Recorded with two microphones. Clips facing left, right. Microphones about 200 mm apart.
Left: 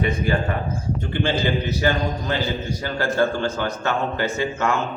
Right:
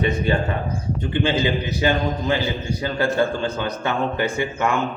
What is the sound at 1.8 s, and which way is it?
A man's voice, 15° right (ahead or behind).